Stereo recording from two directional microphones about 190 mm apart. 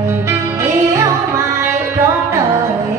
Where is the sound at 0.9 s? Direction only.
15° right (ahead or behind).